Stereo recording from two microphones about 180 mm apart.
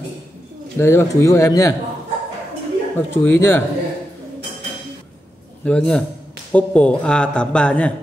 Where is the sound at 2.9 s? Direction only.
10° left (ahead or behind).